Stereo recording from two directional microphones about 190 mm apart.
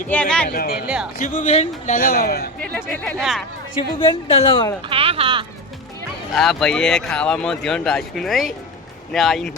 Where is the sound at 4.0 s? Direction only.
25° left (ahead or behind).